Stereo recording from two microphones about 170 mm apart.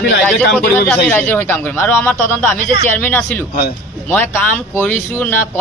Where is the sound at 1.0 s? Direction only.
10° left (ahead or behind).